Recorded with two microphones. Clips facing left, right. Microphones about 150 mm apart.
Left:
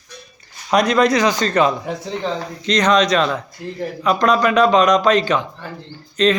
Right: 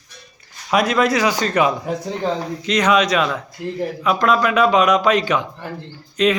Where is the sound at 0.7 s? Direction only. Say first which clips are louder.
Left 2 dB; 5° right (ahead or behind).